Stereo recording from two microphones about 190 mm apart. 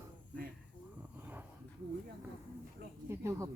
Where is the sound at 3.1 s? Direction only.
15° right (ahead or behind).